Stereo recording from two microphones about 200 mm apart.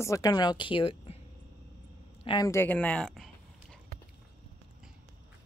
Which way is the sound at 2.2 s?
20° left (ahead or behind).